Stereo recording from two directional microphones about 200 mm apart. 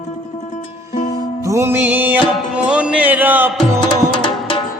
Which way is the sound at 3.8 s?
25° left (ahead or behind).